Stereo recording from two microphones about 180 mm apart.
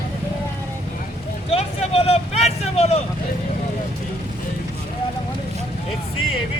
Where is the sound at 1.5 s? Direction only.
35° left (ahead or behind).